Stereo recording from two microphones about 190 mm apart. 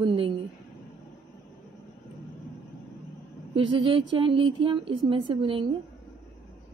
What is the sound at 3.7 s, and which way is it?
A woman's voice, 25° right (ahead or behind).